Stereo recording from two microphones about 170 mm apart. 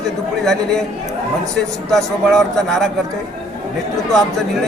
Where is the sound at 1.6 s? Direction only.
Centre (ahead or behind).